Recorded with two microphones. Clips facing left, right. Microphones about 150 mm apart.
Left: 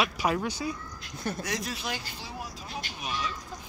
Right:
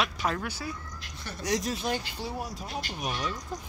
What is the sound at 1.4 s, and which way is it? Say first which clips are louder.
Speech: right 4 dB; 40° right (ahead or behind).